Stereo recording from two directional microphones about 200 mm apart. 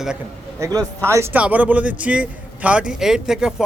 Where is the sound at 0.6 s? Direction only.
20° right (ahead or behind).